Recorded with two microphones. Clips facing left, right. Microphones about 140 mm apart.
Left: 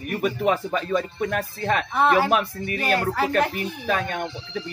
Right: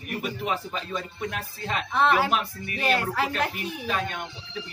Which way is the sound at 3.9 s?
50° left (ahead or behind).